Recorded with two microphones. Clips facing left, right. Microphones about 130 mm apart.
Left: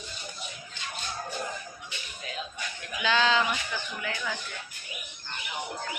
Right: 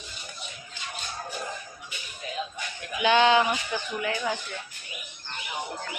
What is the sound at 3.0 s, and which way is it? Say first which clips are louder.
Speech: right 5 dB; 20° right (ahead or behind).